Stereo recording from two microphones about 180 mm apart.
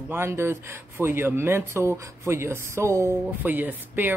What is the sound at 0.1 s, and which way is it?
Speech, 15° right (ahead or behind).